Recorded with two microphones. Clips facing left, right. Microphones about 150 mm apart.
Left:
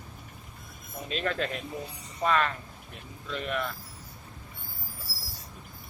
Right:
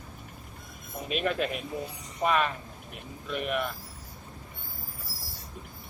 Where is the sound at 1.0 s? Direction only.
10° right (ahead or behind).